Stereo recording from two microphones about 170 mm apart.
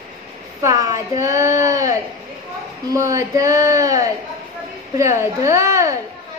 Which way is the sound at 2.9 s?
20° right (ahead or behind).